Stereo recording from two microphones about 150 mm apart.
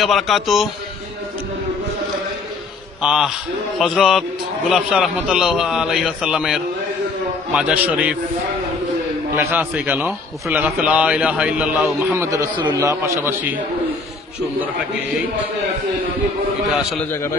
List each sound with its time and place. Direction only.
0.0 s a man's voice: centre (ahead or behind)
3.0 s a man's voice: 5° right (ahead or behind)
9.4 s a man's voice: 15° right (ahead or behind)
17.1 s a man's voice: 15° left (ahead or behind)